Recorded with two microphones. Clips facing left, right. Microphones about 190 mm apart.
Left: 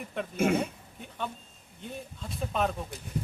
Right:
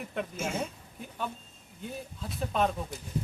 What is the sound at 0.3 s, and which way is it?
Speech, 60° left (ahead or behind).